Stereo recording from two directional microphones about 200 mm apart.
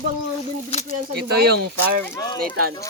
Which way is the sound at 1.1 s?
55° right (ahead or behind).